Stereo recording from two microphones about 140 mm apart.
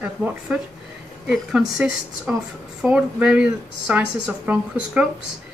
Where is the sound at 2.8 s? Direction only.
5° right (ahead or behind).